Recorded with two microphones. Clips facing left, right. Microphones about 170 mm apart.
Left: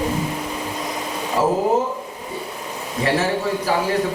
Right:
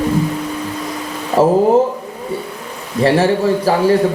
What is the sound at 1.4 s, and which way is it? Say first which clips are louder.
Speech: right 7 dB; 30° right (ahead or behind).